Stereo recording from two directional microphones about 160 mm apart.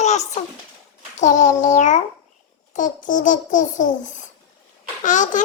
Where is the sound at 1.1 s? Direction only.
50° left (ahead or behind).